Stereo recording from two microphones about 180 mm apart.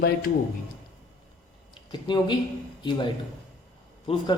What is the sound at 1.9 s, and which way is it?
Speech, 25° left (ahead or behind).